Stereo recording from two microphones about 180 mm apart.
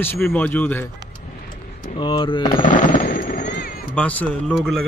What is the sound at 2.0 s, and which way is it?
Speech, 25° left (ahead or behind).